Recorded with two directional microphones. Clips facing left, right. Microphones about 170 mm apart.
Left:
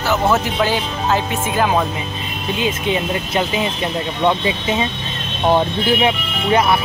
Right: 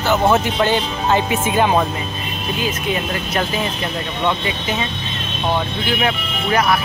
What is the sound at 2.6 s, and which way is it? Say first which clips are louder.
Speech: left 3 dB; 20° left (ahead or behind).